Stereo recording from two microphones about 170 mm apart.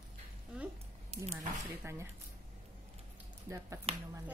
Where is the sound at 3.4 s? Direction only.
15° right (ahead or behind).